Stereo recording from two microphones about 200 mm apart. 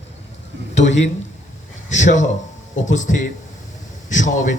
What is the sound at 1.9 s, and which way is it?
Speech, 35° left (ahead or behind).